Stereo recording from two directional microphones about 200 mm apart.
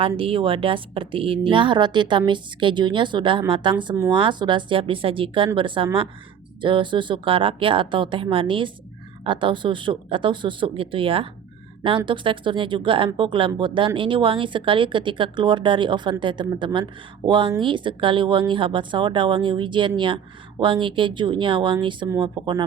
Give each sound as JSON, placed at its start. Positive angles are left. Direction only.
{"t": 0.0, "sound": "speech", "side_deg": -25}